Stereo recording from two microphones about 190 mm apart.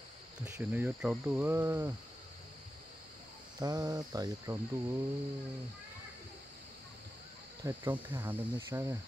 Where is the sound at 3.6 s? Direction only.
20° right (ahead or behind).